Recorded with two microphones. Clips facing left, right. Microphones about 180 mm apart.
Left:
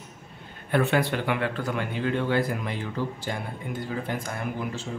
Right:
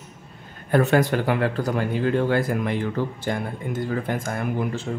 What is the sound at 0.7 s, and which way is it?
Speech, 40° right (ahead or behind).